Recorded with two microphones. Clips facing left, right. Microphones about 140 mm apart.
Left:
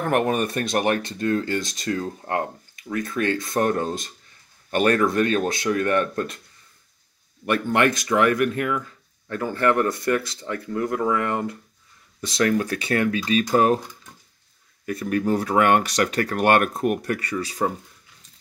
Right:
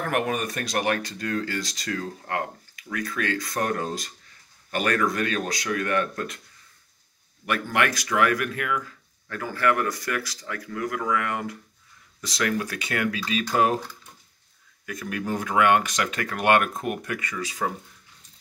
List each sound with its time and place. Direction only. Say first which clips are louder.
0.0 s speech: left 5 dB; 35° left (ahead or behind)
7.4 s speech: left 5 dB; 30° left (ahead or behind)
14.9 s speech: left 7 dB; 35° left (ahead or behind)